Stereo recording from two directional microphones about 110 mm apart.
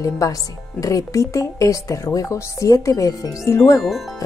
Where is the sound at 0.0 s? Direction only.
30° left (ahead or behind).